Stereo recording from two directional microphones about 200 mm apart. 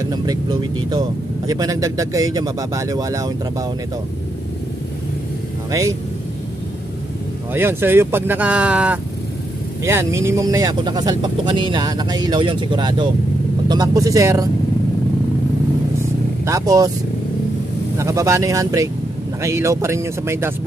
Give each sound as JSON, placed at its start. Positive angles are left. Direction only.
{"t": 0.0, "sound": "speech", "side_deg": -20}
{"t": 5.7, "sound": "speech", "side_deg": -15}
{"t": 7.5, "sound": "speech", "side_deg": -10}
{"t": 16.0, "sound": "vehicle", "side_deg": -15}
{"t": 17.9, "sound": "speech", "side_deg": -15}